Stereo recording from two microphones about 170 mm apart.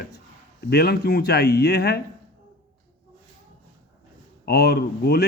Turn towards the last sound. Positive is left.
turn(degrees=70)  # may be behind; listen again after turning